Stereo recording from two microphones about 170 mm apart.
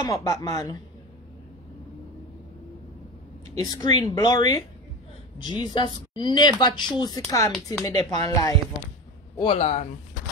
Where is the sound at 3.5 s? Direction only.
25° left (ahead or behind).